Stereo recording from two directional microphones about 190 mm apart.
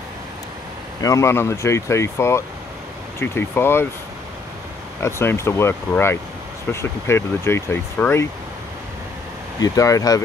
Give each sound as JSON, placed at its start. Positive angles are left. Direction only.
{"t": 1.0, "sound": "speech", "side_deg": 15}
{"t": 5.0, "sound": "speech", "side_deg": 15}
{"t": 9.6, "sound": "speech", "side_deg": 15}